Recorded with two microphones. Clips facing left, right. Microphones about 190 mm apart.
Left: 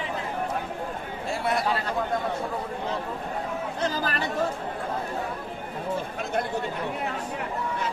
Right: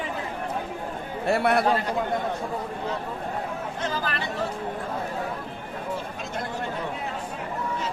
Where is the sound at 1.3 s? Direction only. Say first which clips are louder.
Right 6 dB; 65° right (ahead or behind).